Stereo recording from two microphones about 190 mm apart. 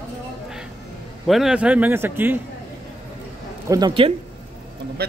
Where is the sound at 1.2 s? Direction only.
Centre (ahead or behind).